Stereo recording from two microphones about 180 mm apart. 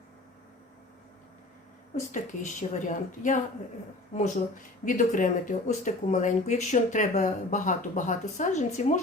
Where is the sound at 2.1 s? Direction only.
45° left (ahead or behind).